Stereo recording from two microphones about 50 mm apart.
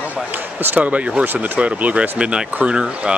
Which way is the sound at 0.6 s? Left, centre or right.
Right.